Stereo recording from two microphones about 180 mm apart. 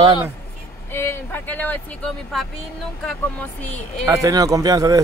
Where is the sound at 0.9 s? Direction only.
15° left (ahead or behind).